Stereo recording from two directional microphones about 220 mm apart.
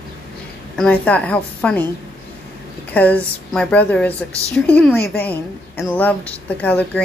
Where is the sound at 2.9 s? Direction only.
5° left (ahead or behind).